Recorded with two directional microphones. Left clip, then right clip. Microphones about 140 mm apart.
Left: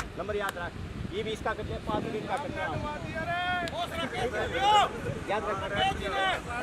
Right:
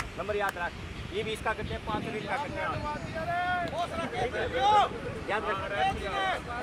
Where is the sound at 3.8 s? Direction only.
30° left (ahead or behind).